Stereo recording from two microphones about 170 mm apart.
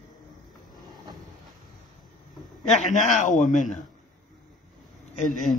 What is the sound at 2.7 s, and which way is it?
A man's voice, 45° left (ahead or behind).